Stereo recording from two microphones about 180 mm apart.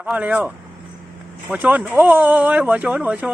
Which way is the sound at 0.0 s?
10° right (ahead or behind).